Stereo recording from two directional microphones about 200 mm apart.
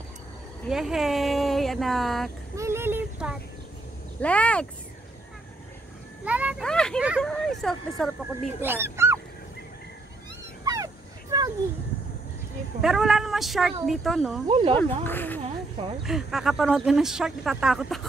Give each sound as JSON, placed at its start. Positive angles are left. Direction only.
{"t": 0.7, "sound": "speech", "side_deg": 0}
{"t": 2.5, "sound": "a sound", "side_deg": -15}
{"t": 4.2, "sound": "speech", "side_deg": 5}
{"t": 6.2, "sound": "vehicle", "side_deg": -5}
{"t": 6.6, "sound": "speech", "side_deg": 5}
{"t": 8.5, "sound": "speech", "side_deg": -10}
{"t": 10.6, "sound": "a sound", "side_deg": -15}
{"t": 12.8, "sound": "speech", "side_deg": 0}
{"t": 14.5, "sound": "speech", "side_deg": -25}
{"t": 14.8, "sound": "speech", "side_deg": 10}
{"t": 16.0, "sound": "speech", "side_deg": 0}